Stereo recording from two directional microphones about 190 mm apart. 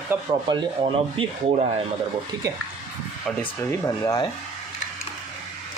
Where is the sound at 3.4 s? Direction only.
15° left (ahead or behind).